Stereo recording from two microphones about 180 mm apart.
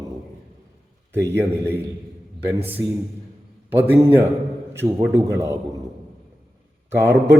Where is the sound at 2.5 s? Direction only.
30° right (ahead or behind).